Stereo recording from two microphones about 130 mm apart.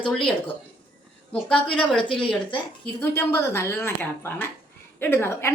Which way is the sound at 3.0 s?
20° left (ahead or behind).